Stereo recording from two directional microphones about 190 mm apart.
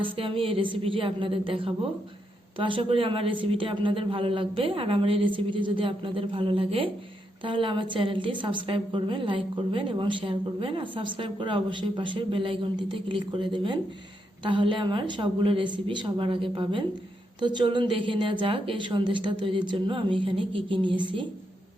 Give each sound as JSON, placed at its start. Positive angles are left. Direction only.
{"t": 0.0, "sound": "a woman's voice", "side_deg": -30}